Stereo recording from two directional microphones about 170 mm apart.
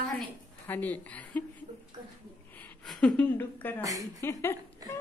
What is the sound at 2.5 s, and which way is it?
A woman's voice, 5° left (ahead or behind).